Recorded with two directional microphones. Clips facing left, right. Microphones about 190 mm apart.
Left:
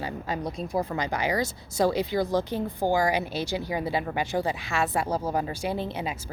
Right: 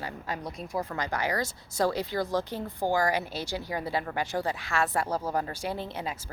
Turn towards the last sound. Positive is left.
turn(degrees=20)  # may be behind; listen again after turning